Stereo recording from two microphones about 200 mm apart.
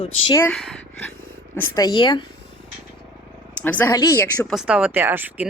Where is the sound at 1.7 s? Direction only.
20° left (ahead or behind).